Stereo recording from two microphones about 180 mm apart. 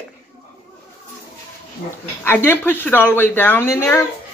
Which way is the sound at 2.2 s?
10° left (ahead or behind).